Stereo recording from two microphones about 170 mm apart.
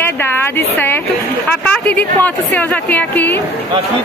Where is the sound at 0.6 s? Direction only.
10° left (ahead or behind).